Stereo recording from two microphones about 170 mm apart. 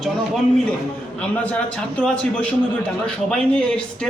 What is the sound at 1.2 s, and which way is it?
A man's voice, 5° left (ahead or behind).